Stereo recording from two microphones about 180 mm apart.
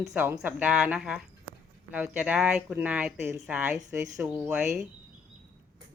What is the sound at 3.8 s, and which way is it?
Speech, 20° right (ahead or behind).